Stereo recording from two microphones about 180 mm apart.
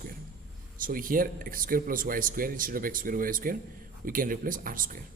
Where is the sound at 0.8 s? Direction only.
50° right (ahead or behind).